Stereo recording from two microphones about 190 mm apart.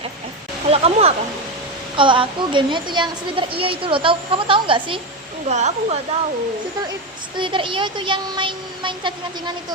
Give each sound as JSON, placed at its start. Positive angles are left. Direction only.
{"t": 0.7, "sound": "a woman's voice", "side_deg": -30}
{"t": 5.5, "sound": "speech", "side_deg": -35}
{"t": 7.3, "sound": "a woman's voice", "side_deg": -25}